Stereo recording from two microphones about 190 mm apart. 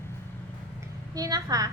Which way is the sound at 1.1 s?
20° right (ahead or behind).